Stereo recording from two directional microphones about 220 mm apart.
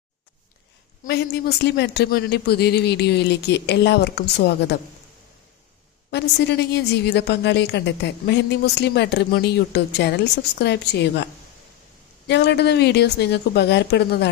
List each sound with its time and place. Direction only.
1.0 s a woman's voice: 50° left (ahead or behind)
6.1 s a woman's voice: 50° left (ahead or behind)
12.3 s a woman's voice: 50° left (ahead or behind)